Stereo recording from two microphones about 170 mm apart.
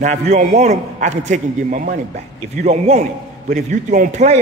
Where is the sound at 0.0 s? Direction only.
45° right (ahead or behind).